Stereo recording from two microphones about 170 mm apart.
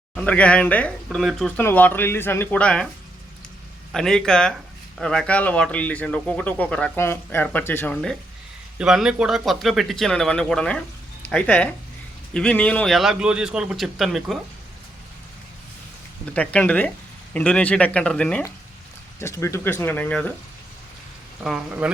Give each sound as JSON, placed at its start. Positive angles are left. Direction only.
{"t": 0.1, "sound": "speech", "side_deg": 5}
{"t": 3.9, "sound": "speech", "side_deg": 5}
{"t": 8.8, "sound": "speech", "side_deg": -5}
{"t": 16.2, "sound": "speech", "side_deg": 5}
{"t": 19.2, "sound": "speech", "side_deg": 15}
{"t": 21.4, "sound": "speech", "side_deg": -5}